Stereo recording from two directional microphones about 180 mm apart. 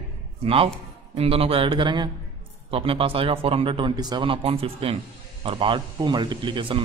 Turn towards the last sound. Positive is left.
turn(degrees=-30)  # may be behind; listen again after turning